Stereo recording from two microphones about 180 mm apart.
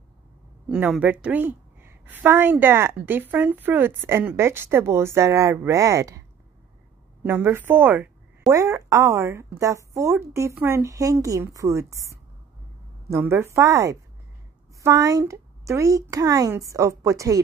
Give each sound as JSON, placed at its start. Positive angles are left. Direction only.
{"t": 0.7, "sound": "a woman's voice", "side_deg": -5}
{"t": 7.2, "sound": "a woman's voice", "side_deg": -10}